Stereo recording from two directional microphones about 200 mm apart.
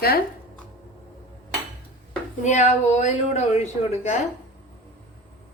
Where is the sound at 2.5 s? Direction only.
35° left (ahead or behind).